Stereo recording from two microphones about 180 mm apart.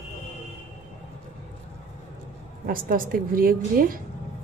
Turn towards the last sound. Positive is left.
turn(degrees=-50)  # may be behind; listen again after turning